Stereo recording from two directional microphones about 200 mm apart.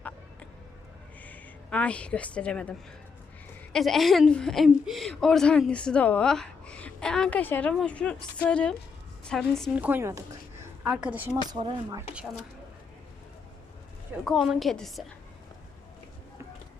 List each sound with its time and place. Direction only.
1.2 s a woman's voice: 5° left (ahead or behind)
11.4 s speech: 20° right (ahead or behind)
14.3 s speech: centre (ahead or behind)